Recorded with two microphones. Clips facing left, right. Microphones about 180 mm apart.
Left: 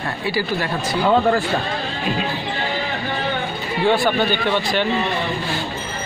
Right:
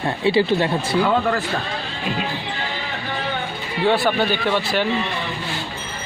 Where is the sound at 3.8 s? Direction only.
Centre (ahead or behind).